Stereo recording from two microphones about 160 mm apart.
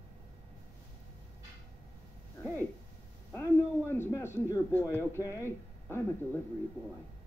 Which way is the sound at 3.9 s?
15° left (ahead or behind).